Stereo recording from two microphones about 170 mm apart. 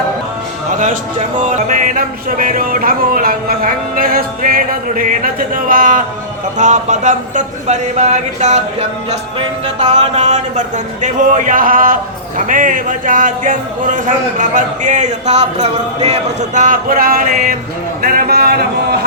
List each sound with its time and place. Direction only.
1.4 s music: 45° right (ahead or behind)
6.6 s a man's voice: 45° right (ahead or behind); by 19.0 s 70° right (ahead or behind)